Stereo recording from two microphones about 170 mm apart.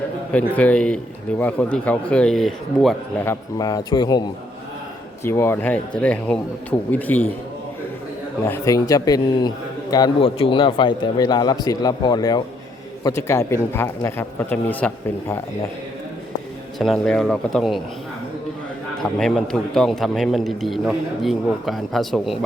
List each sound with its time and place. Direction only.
0.3 s a man's voice: 10° left (ahead or behind)
3.2 s speech: 20° left (ahead or behind)
5.2 s a man's voice: 15° left (ahead or behind)
8.4 s speech: 20° left (ahead or behind)
10.2 s a man's voice: 35° left (ahead or behind); by 15.4 s 10° left (ahead or behind)
16.7 s a man's voice: centre (ahead or behind)
19.0 s a man's voice: 5° left (ahead or behind)